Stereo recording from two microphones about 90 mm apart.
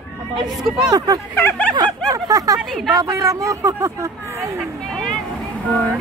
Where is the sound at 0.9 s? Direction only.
45° right (ahead or behind).